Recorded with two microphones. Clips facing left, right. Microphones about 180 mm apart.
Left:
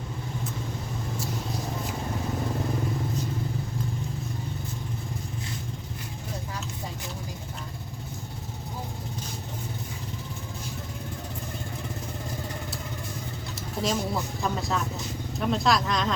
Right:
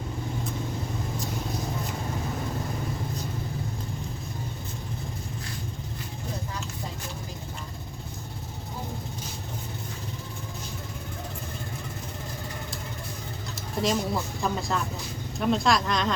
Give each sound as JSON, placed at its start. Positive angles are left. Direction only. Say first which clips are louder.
{"t": 13.6, "sound": "speech", "louder": "right 2 dB", "side_deg": 0}